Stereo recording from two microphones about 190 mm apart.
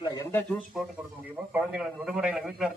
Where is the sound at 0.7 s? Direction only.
Centre (ahead or behind).